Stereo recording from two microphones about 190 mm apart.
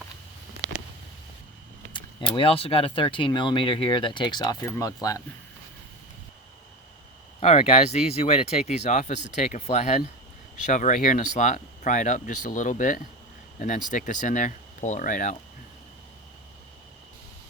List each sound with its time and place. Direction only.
1.9 s speech: 25° left (ahead or behind)
7.3 s speech: 30° left (ahead or behind)